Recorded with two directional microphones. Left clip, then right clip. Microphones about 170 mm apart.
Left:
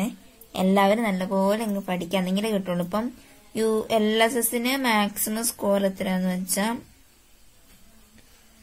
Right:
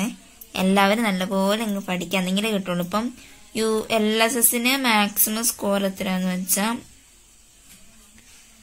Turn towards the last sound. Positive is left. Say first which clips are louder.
# right 2 dB
turn(degrees=10)  # may be behind; listen again after turning